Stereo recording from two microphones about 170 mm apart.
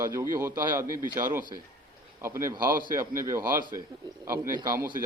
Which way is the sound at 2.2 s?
15° right (ahead or behind).